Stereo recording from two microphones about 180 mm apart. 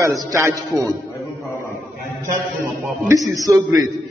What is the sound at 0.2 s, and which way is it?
Speech, 15° right (ahead or behind).